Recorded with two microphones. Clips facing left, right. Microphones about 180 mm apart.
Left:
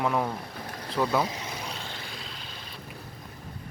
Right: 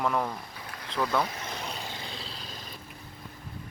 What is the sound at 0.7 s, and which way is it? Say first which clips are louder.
Boat: left 4 dB; 40° left (ahead or behind).